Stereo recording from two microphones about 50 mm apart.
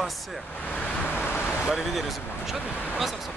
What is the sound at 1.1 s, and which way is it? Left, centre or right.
Vehicle, left.